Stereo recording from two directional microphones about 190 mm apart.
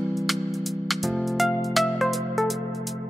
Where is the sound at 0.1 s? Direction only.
Centre (ahead or behind).